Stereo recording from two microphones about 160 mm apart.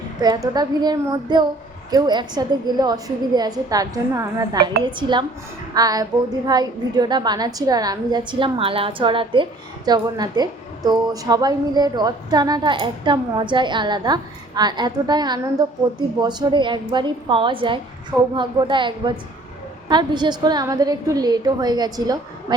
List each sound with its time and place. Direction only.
0.2 s a woman's voice: 25° right (ahead or behind)